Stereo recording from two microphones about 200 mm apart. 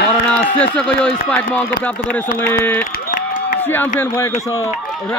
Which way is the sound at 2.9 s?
40° left (ahead or behind).